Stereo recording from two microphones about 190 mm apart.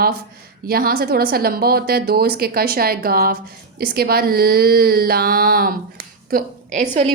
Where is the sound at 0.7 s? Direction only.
50° right (ahead or behind).